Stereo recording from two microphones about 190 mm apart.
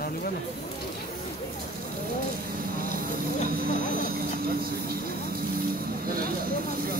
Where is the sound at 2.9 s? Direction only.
50° right (ahead or behind).